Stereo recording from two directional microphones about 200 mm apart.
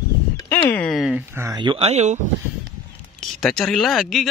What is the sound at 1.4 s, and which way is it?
Speech, 20° right (ahead or behind).